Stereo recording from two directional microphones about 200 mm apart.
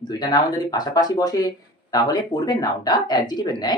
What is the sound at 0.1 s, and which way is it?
Speech, 20° left (ahead or behind).